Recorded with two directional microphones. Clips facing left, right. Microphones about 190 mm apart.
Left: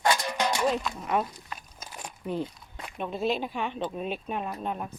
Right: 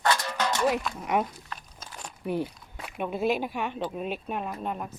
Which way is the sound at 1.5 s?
10° left (ahead or behind).